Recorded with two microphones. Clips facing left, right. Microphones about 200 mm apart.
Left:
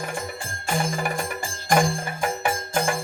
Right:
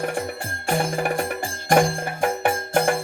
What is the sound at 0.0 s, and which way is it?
Music, 65° right (ahead or behind).